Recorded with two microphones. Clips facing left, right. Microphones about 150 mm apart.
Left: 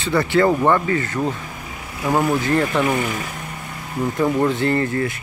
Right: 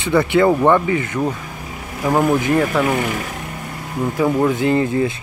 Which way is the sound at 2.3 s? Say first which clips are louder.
Right 2 dB; 15° right (ahead or behind).